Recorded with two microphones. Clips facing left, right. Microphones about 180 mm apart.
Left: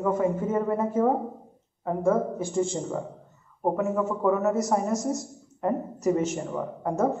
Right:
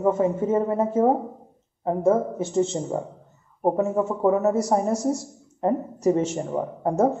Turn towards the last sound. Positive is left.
turn(degrees=-30)  # may be behind; listen again after turning